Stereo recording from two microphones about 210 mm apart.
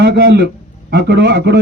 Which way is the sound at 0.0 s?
50° right (ahead or behind).